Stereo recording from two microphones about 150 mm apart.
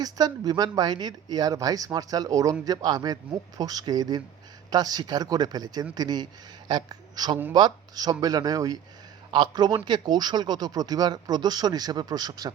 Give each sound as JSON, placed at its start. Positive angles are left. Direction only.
{"t": 0.0, "sound": "speech", "side_deg": -25}